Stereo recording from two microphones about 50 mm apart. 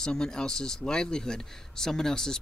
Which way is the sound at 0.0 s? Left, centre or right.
Centre.